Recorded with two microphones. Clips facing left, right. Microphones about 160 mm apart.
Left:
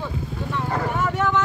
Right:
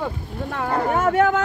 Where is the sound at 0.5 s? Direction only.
65° right (ahead or behind).